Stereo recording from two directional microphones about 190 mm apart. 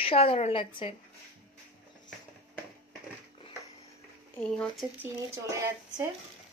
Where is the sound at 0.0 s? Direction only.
30° left (ahead or behind).